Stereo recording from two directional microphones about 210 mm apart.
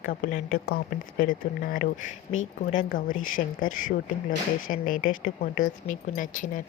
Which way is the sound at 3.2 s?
40° left (ahead or behind).